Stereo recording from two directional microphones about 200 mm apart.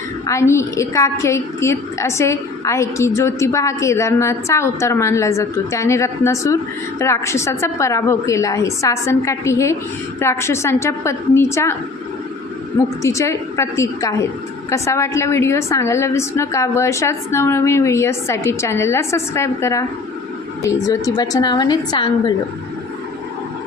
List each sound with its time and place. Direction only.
0.3 s a woman's voice: 15° left (ahead or behind)
13.0 s a woman's voice: 15° left (ahead or behind)